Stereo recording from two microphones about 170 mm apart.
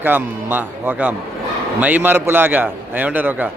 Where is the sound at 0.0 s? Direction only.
10° right (ahead or behind).